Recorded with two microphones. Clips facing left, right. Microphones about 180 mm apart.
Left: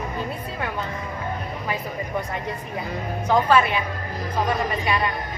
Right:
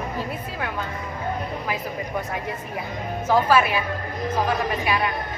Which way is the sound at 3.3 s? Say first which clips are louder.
Even; 10° right (ahead or behind).